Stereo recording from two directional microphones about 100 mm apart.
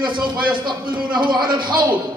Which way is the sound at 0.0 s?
55° right (ahead or behind).